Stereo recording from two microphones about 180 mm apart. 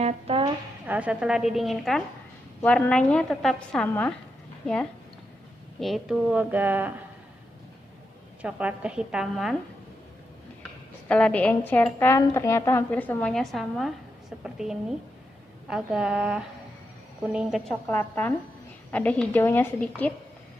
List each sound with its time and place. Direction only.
0.0 s a sound: 30° right (ahead or behind)
0.9 s a woman's voice: 10° right (ahead or behind)
8.4 s a woman's voice: 5° right (ahead or behind)
11.1 s a woman's voice: 5° left (ahead or behind)